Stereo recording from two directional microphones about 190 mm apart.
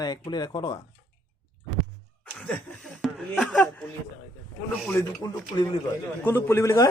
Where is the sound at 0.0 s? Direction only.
20° left (ahead or behind).